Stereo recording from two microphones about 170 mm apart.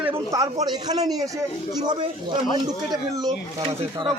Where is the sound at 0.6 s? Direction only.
25° right (ahead or behind).